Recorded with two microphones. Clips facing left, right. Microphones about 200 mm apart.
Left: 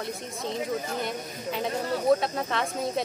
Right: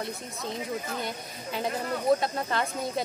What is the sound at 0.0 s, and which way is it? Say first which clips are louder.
Speech: left 2 dB; centre (ahead or behind).